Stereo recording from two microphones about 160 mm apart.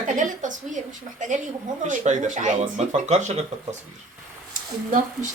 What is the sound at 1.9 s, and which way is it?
Speech, 50° right (ahead or behind).